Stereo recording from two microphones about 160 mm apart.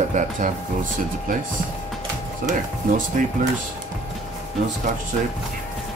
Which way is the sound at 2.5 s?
55° right (ahead or behind).